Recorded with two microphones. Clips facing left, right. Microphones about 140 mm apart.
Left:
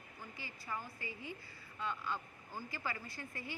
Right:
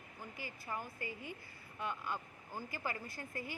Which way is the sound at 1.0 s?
50° right (ahead or behind).